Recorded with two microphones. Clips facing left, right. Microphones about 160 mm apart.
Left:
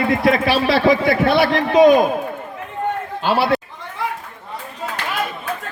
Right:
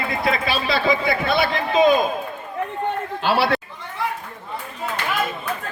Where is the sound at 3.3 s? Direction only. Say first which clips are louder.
Left 2 dB; 20° left (ahead or behind).